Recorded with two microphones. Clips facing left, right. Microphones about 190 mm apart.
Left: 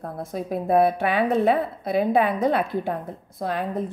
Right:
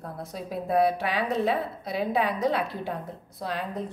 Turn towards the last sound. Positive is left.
turn(degrees=50)  # may be behind; listen again after turning